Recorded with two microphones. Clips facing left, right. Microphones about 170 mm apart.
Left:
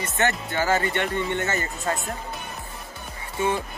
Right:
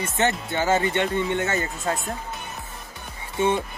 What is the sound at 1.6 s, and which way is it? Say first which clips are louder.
Speech: right 1 dB; centre (ahead or behind).